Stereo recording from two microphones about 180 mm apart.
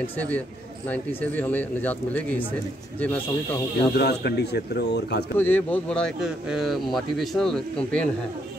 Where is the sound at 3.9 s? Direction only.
65° left (ahead or behind).